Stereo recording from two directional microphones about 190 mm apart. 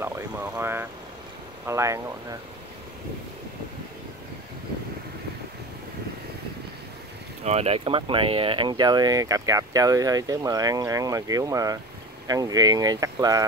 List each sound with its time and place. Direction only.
0.0 s speech: 10° right (ahead or behind)
7.4 s speech: 35° right (ahead or behind); by 13.5 s 20° right (ahead or behind)